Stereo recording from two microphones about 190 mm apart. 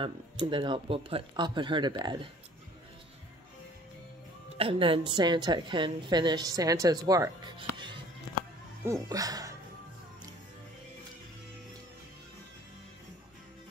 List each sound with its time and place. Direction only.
0.0 s a woman's voice: 25° right (ahead or behind)
4.6 s a woman's voice: 30° right (ahead or behind)